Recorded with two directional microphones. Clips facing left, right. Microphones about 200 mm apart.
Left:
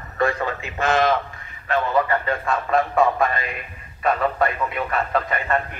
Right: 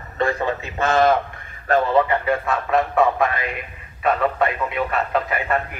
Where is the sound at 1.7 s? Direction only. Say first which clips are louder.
Right 4 dB; 40° right (ahead or behind).